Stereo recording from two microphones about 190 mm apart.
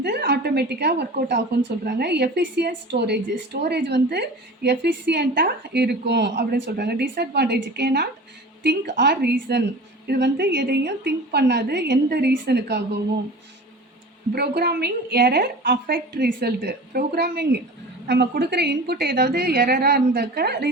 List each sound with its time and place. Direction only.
0.0 s a woman's voice: 60° right (ahead or behind)
14.3 s a woman's voice: 55° right (ahead or behind)